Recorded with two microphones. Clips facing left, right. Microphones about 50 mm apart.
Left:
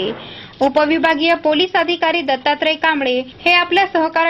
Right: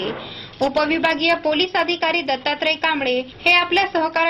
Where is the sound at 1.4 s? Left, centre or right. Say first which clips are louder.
Left 4 dB; left.